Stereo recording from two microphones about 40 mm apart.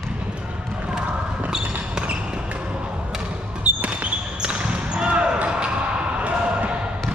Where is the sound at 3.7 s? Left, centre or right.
Right.